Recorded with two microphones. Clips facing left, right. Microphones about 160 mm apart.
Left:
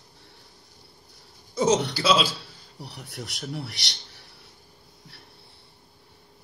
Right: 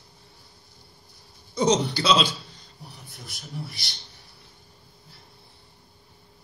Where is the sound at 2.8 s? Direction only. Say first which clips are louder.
Left 7 dB; 75° left (ahead or behind).